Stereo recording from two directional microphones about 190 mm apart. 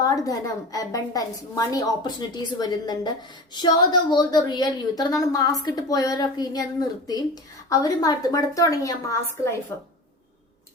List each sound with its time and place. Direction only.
0.0 s a woman's voice: 20° left (ahead or behind)